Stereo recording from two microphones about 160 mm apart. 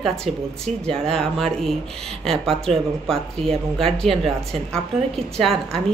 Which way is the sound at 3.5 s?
35° right (ahead or behind).